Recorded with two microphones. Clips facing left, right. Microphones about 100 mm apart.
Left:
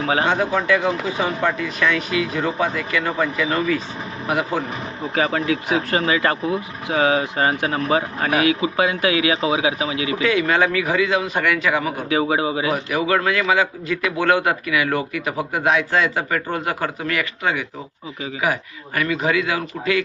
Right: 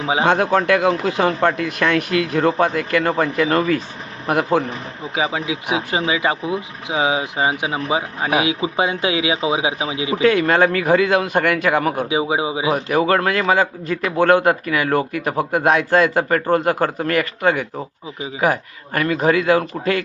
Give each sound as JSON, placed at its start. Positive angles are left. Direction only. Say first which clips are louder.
{"t": 0.3, "sound": "a man's voice", "louder": "right 3 dB", "side_deg": -60}
{"t": 5.1, "sound": "speech", "louder": "left 2 dB", "side_deg": -10}
{"t": 10.2, "sound": "a man's voice", "louder": "right 4 dB", "side_deg": -45}
{"t": 12.0, "sound": "speech", "louder": "even", "side_deg": -15}
{"t": 12.7, "sound": "a man's voice", "louder": "right 3 dB", "side_deg": -45}